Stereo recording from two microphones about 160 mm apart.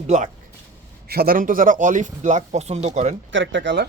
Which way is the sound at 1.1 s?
70° right (ahead or behind).